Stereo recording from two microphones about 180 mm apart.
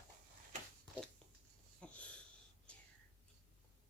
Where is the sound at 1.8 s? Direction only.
5° left (ahead or behind).